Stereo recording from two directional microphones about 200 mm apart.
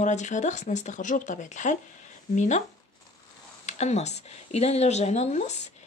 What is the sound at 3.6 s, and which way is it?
Speech, 35° left (ahead or behind).